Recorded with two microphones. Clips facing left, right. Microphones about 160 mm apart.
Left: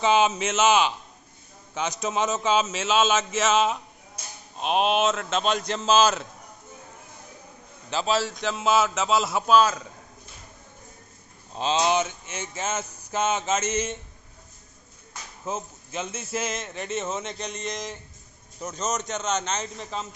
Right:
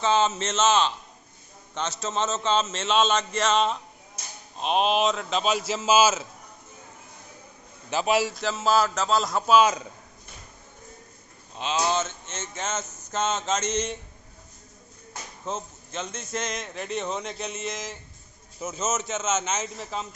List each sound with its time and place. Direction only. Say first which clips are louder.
0.0 s a man's voice: left 2 dB; 15° left (ahead or behind); by 6.2 s 5° right (ahead or behind)
7.9 s a man's voice: right 2 dB; 15° right (ahead or behind)
8.4 s a man's voice: even; centre (ahead or behind)
9.5 s a man's voice: even; 15° right (ahead or behind)
11.5 s speech: left 3 dB; 35° left (ahead or behind)
11.8 s a man's voice: even; 15° left (ahead or behind)
15.4 s a man's voice: left 1 dB; 10° left (ahead or behind)